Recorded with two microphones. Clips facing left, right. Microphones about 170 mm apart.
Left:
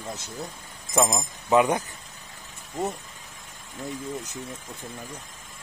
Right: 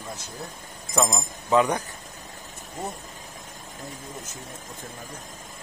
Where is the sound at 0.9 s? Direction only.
10° left (ahead or behind).